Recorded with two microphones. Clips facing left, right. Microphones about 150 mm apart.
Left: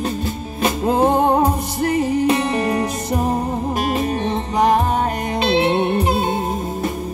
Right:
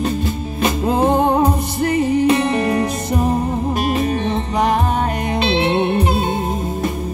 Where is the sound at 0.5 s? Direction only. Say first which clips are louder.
Even; 40° left (ahead or behind).